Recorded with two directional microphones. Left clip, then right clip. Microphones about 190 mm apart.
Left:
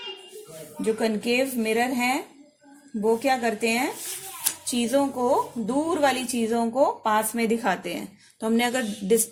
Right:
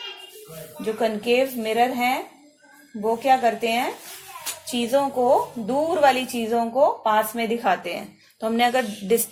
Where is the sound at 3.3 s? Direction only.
35° left (ahead or behind).